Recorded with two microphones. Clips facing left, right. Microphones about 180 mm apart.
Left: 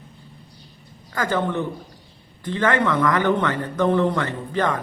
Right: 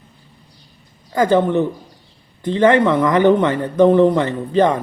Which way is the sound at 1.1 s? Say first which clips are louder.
Right 8 dB; 20° right (ahead or behind).